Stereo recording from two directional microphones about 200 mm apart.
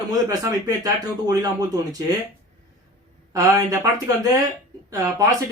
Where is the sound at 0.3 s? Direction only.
20° right (ahead or behind).